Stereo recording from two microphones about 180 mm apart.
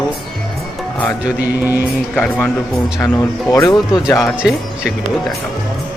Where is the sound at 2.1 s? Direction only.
10° left (ahead or behind).